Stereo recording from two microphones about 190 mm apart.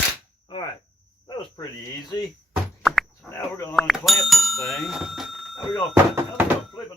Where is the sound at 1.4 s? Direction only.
20° left (ahead or behind).